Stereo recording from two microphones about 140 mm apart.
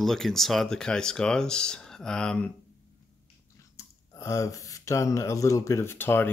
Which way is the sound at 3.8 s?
20° left (ahead or behind).